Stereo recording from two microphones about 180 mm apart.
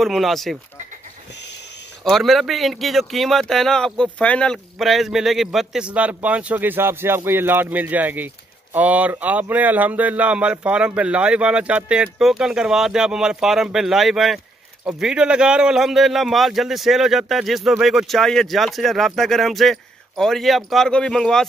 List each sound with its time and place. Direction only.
0.0 s a man's voice: centre (ahead or behind)
1.3 s a sound: 70° left (ahead or behind)
2.0 s a man's voice: centre (ahead or behind)